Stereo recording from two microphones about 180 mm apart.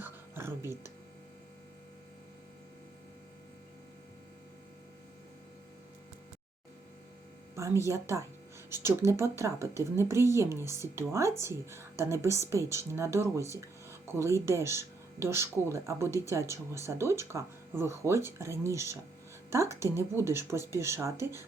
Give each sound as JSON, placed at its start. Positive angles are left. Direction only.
{"t": 0.0, "sound": "music", "side_deg": -15}
{"t": 7.5, "sound": "a woman's voice", "side_deg": -15}